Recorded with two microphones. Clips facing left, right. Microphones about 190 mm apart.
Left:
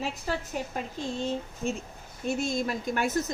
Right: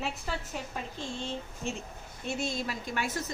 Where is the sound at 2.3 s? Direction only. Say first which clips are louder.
Left 5 dB; 45° left (ahead or behind).